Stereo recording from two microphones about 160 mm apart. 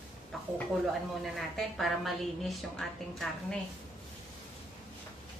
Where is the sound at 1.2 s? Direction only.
Centre (ahead or behind).